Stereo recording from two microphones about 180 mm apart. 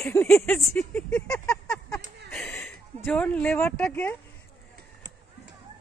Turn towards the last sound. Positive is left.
turn(degrees=10)  # may be behind; listen again after turning